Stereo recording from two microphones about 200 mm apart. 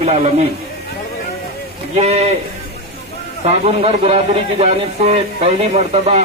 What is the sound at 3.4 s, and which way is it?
A man's voice, 30° right (ahead or behind).